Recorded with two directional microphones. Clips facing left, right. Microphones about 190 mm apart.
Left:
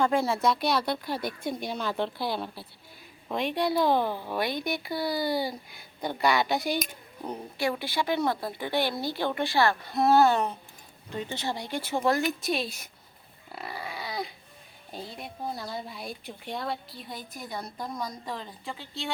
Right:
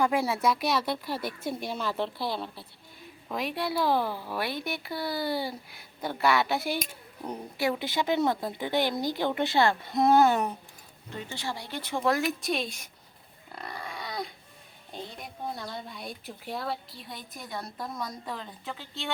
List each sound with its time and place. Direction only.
0.0 s a woman's voice: 10° right (ahead or behind)
7.6 s speech: 20° right (ahead or behind)
11.3 s speech: 20° left (ahead or behind)
11.8 s a woman's voice: 5° left (ahead or behind)
13.5 s dog: 5° left (ahead or behind)
14.9 s a woman's voice: 5° left (ahead or behind)